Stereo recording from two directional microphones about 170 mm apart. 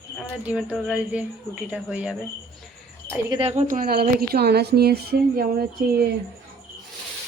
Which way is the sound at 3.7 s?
60° right (ahead or behind).